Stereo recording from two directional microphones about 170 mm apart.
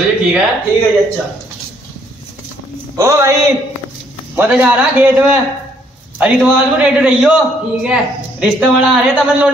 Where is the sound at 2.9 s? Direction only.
15° right (ahead or behind).